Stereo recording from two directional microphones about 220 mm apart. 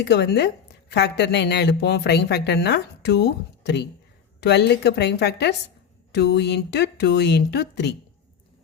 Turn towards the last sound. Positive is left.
turn(degrees=50)  # may be behind; listen again after turning